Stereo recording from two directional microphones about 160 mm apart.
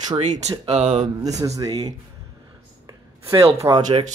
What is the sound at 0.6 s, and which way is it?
Speech, 40° right (ahead or behind).